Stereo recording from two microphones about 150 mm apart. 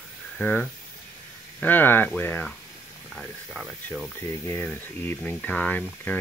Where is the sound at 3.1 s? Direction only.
Centre (ahead or behind).